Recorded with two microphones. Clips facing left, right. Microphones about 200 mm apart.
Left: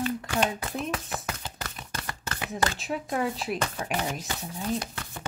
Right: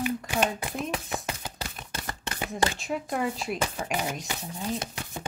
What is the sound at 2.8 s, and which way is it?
Speech, centre (ahead or behind).